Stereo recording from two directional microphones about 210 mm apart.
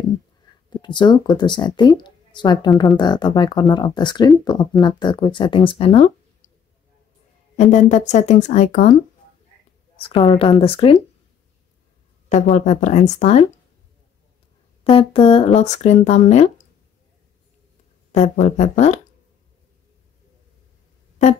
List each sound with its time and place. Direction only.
0.7 s speech: 20° left (ahead or behind)
7.5 s speech: 35° left (ahead or behind)
9.9 s speech: 25° left (ahead or behind)
12.3 s speech: 35° left (ahead or behind)
14.8 s speech: 25° left (ahead or behind)
18.1 s speech: 35° left (ahead or behind)